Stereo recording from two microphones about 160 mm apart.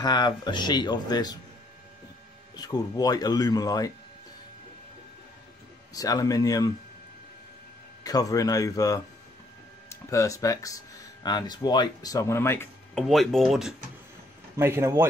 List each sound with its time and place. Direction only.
0.0 s speech: 25° left (ahead or behind)
2.5 s speech: 25° left (ahead or behind)
5.9 s speech: 20° left (ahead or behind)
8.0 s speech: 25° left (ahead or behind)
10.0 s speech: 20° left (ahead or behind)
12.9 s speech: centre (ahead or behind)
14.6 s speech: 15° right (ahead or behind)